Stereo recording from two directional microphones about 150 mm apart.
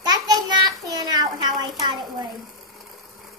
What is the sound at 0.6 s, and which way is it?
A child's voice, 25° right (ahead or behind).